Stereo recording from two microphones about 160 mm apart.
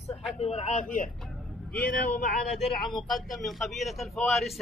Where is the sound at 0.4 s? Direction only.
40° left (ahead or behind).